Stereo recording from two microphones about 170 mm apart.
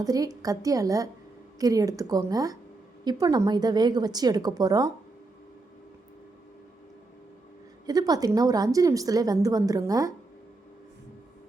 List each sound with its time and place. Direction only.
0.0 s a woman's voice: 20° right (ahead or behind)
7.9 s a woman's voice: 20° right (ahead or behind)